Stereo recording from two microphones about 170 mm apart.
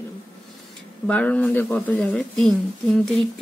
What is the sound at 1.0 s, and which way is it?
Speech, 5° left (ahead or behind).